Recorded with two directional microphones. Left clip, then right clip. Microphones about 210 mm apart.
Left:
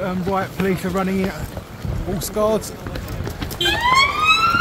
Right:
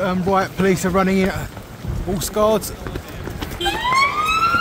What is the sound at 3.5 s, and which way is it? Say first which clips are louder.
Police car: left 2 dB; 25° left (ahead or behind).